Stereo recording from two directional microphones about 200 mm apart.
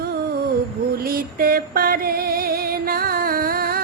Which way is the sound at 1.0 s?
45° right (ahead or behind).